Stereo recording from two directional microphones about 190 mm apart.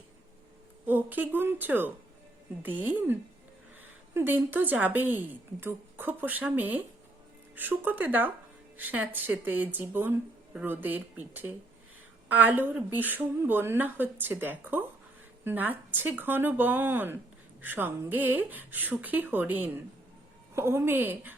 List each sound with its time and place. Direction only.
0.9 s a woman's voice: 10° right (ahead or behind)